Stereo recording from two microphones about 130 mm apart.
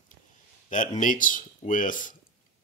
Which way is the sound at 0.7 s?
85° left.